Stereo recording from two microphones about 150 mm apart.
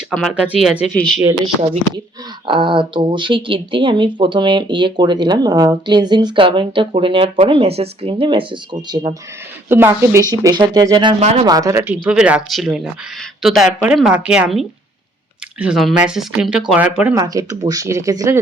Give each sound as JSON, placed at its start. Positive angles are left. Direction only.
{"t": 0.1, "sound": "speech", "side_deg": 5}
{"t": 0.3, "sound": "speech", "side_deg": -5}
{"t": 2.5, "sound": "speech", "side_deg": -35}
{"t": 9.6, "sound": "speech", "side_deg": -15}
{"t": 11.2, "sound": "speech", "side_deg": -45}
{"t": 11.4, "sound": "speech", "side_deg": -25}
{"t": 17.2, "sound": "speech", "side_deg": -25}